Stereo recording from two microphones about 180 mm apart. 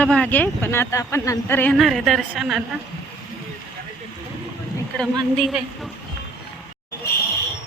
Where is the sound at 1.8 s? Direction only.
Centre (ahead or behind).